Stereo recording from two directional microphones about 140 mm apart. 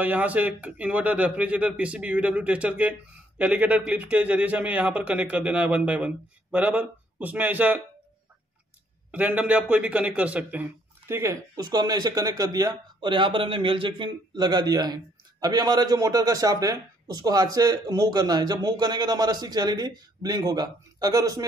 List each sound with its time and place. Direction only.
0.0 s speech: 10° right (ahead or behind)
9.1 s a man's voice: 10° right (ahead or behind); by 21.5 s 25° right (ahead or behind)